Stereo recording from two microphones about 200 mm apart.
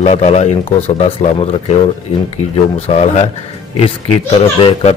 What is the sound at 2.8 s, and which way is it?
Speech, 35° left (ahead or behind).